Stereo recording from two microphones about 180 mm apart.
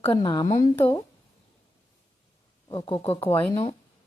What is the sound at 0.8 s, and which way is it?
Speech, 10° left (ahead or behind).